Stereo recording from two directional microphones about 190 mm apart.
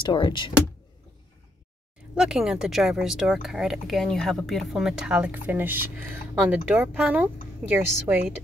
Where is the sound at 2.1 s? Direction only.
5° right (ahead or behind).